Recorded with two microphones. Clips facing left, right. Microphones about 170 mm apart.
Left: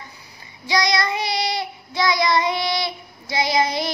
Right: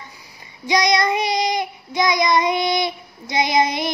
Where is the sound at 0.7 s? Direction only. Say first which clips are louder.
Right 3 dB; 20° right (ahead or behind).